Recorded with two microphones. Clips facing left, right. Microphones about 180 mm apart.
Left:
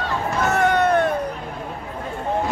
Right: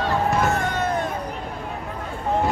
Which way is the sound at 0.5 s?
70° left (ahead or behind).